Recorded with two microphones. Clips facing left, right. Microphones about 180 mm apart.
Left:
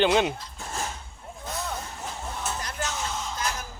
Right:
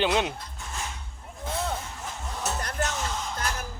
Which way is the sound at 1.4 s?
25° right (ahead or behind).